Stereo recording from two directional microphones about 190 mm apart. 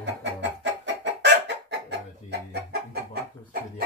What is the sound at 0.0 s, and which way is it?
Chicken, 70° right (ahead or behind).